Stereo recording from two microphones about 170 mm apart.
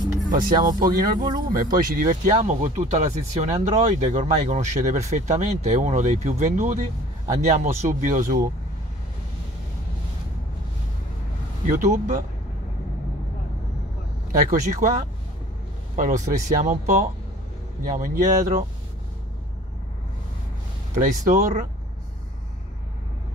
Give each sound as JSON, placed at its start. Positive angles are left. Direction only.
{"t": 0.3, "sound": "speech", "side_deg": -55}
{"t": 2.4, "sound": "speech", "side_deg": -40}
{"t": 11.6, "sound": "speech", "side_deg": -50}
{"t": 14.4, "sound": "speech", "side_deg": -50}
{"t": 20.9, "sound": "speech", "side_deg": -50}